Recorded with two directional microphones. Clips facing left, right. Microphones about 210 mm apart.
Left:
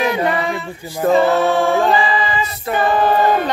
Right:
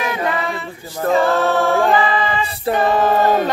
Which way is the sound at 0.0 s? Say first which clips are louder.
Left 4 dB; 30° left (ahead or behind).